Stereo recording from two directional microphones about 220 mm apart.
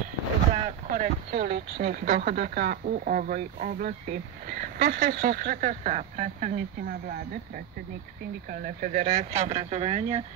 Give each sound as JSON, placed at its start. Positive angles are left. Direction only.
{"t": 0.7, "sound": "a sound", "side_deg": -35}
{"t": 1.3, "sound": "speech", "side_deg": -45}
{"t": 8.5, "sound": "speech", "side_deg": -40}